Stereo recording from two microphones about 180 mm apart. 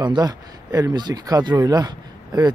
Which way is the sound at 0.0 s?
20° right (ahead or behind).